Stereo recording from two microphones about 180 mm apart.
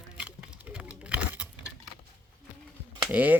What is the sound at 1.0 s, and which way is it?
Patter, 5° right (ahead or behind).